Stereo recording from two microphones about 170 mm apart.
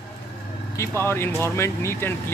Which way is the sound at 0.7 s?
15° left (ahead or behind).